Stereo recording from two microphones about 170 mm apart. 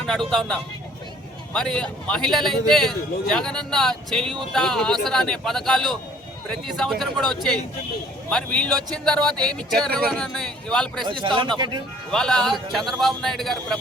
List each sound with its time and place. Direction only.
0.0 s speech: centre (ahead or behind)
11.0 s speech: 30° right (ahead or behind)
12.1 s speech: 5° left (ahead or behind)